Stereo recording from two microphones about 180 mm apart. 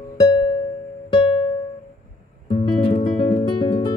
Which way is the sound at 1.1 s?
30° left (ahead or behind).